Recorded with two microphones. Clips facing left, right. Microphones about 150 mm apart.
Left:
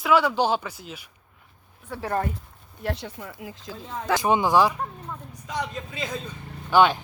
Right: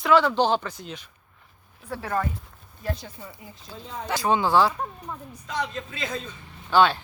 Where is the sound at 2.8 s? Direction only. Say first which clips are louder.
Left 2 dB; 70° left (ahead or behind).